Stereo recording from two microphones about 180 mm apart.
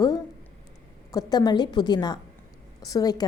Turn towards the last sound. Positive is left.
turn(degrees=20)  # may be behind; listen again after turning